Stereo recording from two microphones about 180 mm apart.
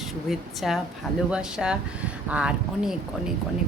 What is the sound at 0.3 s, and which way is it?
Speech, centre (ahead or behind).